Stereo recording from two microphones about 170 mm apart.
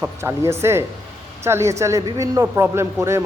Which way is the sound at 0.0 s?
15° right (ahead or behind).